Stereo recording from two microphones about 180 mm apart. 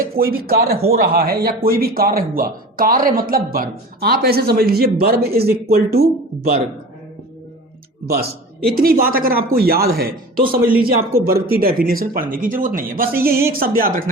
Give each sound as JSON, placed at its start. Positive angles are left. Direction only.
{"t": 0.0, "sound": "speech", "side_deg": -55}
{"t": 8.0, "sound": "speech", "side_deg": -60}
{"t": 10.6, "sound": "speech", "side_deg": -10}
{"t": 11.2, "sound": "speech", "side_deg": -55}